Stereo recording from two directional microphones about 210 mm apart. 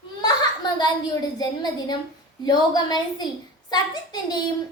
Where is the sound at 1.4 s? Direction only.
20° left (ahead or behind).